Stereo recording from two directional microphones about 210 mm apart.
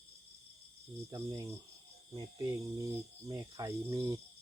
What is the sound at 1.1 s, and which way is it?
Cricket, 15° right (ahead or behind).